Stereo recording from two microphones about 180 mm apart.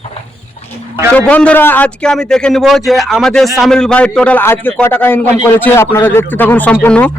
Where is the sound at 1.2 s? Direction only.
5° left (ahead or behind).